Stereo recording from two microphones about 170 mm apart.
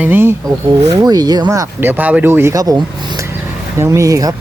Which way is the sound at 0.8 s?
25° right (ahead or behind).